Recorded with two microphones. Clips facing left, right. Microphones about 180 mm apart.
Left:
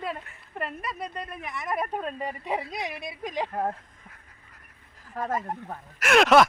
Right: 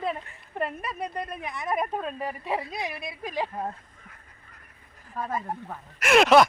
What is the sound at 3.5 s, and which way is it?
Speech, 60° left (ahead or behind).